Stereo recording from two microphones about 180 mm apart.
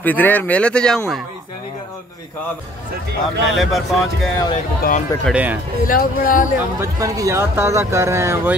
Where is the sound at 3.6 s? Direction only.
Centre (ahead or behind).